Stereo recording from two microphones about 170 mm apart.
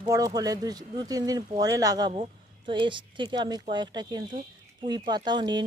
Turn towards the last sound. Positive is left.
turn(degrees=-25)  # may be behind; listen again after turning